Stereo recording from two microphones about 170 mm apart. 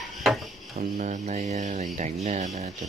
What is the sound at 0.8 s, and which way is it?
Speech, 50° right (ahead or behind).